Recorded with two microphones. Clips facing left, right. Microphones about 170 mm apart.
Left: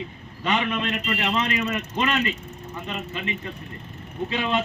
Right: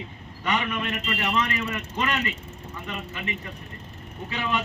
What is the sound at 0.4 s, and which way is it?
A man's voice, 25° left (ahead or behind).